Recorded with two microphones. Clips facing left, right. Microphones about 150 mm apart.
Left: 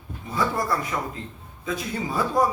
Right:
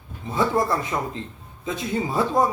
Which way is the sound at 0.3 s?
25° right (ahead or behind).